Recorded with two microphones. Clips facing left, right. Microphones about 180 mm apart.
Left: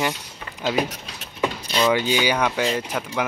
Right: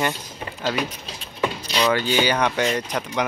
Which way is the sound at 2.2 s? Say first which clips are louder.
Even; 5° left (ahead or behind).